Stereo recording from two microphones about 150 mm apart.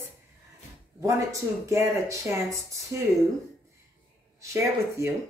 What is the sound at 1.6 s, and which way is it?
Speech, 20° right (ahead or behind).